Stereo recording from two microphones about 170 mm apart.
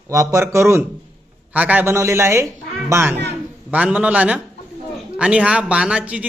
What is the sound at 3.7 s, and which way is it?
Speech, 10° right (ahead or behind).